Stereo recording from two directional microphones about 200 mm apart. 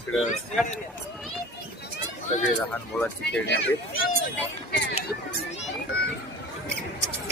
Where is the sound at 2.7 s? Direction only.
5° left (ahead or behind).